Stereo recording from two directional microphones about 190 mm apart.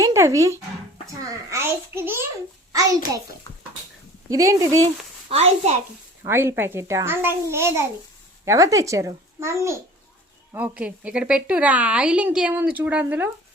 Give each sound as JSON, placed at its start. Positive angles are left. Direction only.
{"t": 0.0, "sound": "a woman's voice", "side_deg": -15}
{"t": 4.3, "sound": "a woman's voice", "side_deg": -15}
{"t": 5.3, "sound": "a child's voice", "side_deg": -35}
{"t": 6.2, "sound": "a woman's voice", "side_deg": -15}